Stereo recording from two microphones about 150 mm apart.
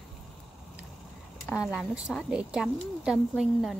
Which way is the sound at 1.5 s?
5° right (ahead or behind).